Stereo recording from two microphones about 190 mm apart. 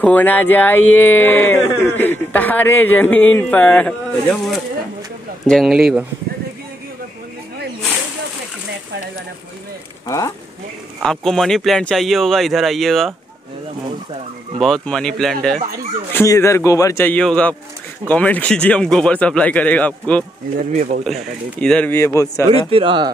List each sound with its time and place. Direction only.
0.0 s speech: 10° left (ahead or behind)
10.0 s speech: 20° left (ahead or behind)
11.0 s speech: centre (ahead or behind)
14.6 s speech: 5° left (ahead or behind)
16.1 s speech: 15° left (ahead or behind)
22.5 s speech: 30° right (ahead or behind)